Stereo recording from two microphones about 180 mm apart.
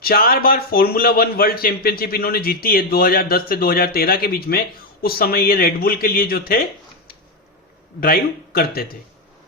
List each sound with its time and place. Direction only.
0.0 s a man's voice: 55° left (ahead or behind)
8.0 s a man's voice: 55° left (ahead or behind)